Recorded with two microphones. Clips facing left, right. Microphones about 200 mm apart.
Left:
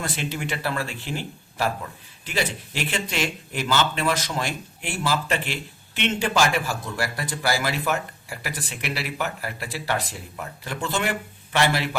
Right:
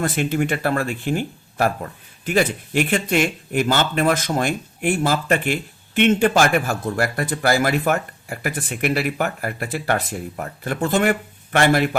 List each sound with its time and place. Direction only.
0.0 s speech: 55° right (ahead or behind)